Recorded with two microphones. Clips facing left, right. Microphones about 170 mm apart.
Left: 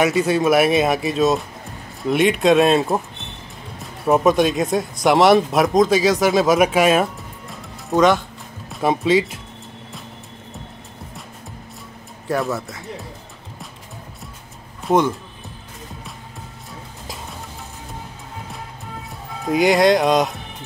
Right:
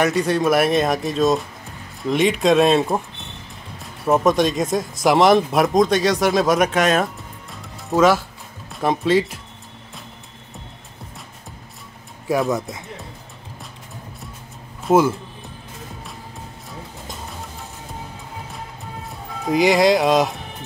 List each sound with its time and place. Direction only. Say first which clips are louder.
0.0 s speech: left 1 dB; centre (ahead or behind)
12.4 s speech: right 3 dB; 20° right (ahead or behind)
14.9 s speech: right 2 dB; 5° right (ahead or behind)
19.0 s speech: even; centre (ahead or behind)